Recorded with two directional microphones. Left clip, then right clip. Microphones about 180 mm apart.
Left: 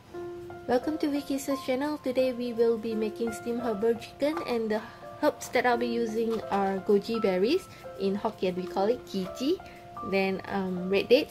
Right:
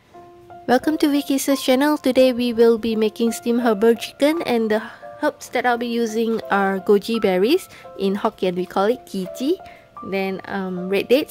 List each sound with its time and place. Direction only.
0.7 s speech: 55° right (ahead or behind)
5.2 s a woman's voice: 35° right (ahead or behind)